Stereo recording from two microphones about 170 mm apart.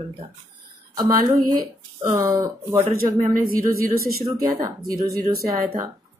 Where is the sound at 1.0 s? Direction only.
20° right (ahead or behind).